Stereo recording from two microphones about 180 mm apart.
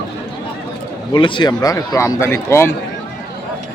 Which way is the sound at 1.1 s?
25° left (ahead or behind).